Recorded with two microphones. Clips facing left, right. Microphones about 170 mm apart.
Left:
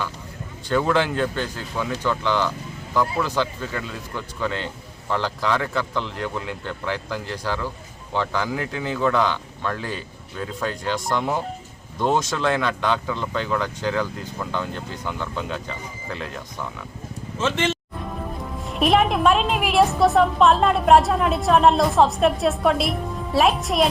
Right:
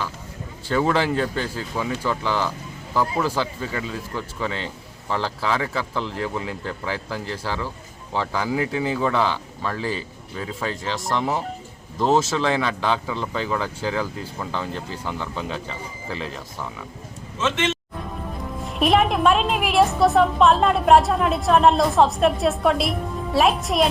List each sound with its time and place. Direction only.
0.7 s a woman's voice: 5° right (ahead or behind)
17.4 s speech: 30° left (ahead or behind)
18.6 s a woman's voice: centre (ahead or behind)